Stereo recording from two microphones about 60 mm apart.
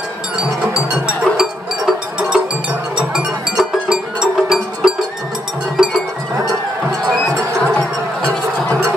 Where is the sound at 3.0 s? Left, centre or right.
Centre.